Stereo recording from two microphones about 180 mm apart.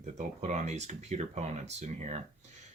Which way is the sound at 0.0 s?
40° right (ahead or behind).